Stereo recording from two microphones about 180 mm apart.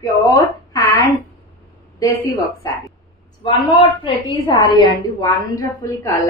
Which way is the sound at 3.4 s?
30° left (ahead or behind).